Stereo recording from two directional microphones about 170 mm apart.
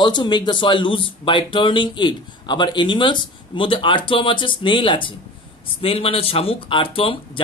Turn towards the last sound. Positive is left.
turn(degrees=30)  # may be behind; listen again after turning